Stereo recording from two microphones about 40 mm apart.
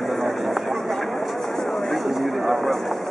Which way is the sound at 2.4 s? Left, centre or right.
Centre.